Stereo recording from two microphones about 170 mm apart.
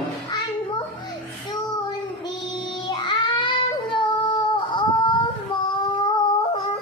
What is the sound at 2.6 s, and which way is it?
Child singing, 25° left (ahead or behind).